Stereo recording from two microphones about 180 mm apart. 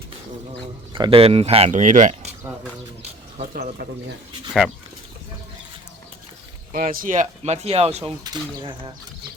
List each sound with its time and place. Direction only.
0.9 s speech: 30° right (ahead or behind)
1.7 s speech: 45° right (ahead or behind)
3.0 s bird: 35° right (ahead or behind)
3.5 s speech: 55° right (ahead or behind)
6.7 s speech: 50° right (ahead or behind)
8.2 s speech: 25° right (ahead or behind)